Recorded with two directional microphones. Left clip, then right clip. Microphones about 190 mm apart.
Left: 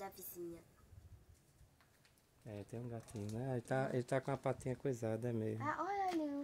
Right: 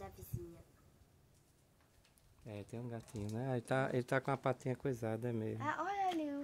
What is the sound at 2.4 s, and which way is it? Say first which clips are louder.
Speech: right 1 dB; 15° right (ahead or behind).